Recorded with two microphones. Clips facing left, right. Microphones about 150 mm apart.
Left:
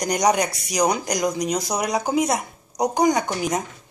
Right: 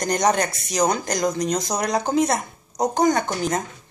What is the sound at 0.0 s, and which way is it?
Speech, 10° left (ahead or behind).